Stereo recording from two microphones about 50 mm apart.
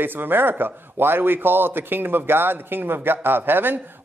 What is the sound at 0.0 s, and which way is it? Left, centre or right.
Speech, right.